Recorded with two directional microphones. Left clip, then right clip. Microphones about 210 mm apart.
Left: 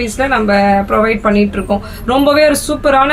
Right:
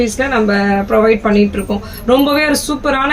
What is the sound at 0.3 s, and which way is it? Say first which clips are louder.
A woman's voice: left 7 dB; 20° left (ahead or behind).